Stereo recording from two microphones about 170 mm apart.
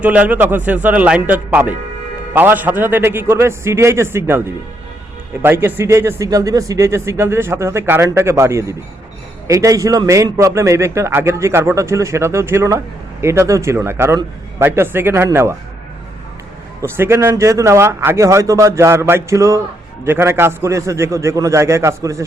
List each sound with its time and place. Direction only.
0.0 s a man's voice: 10° right (ahead or behind)
16.8 s a man's voice: 15° right (ahead or behind)